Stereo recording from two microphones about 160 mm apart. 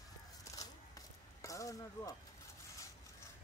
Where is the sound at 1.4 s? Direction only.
20° left (ahead or behind).